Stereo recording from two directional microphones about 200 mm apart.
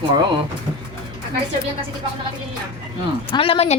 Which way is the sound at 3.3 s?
30° left (ahead or behind).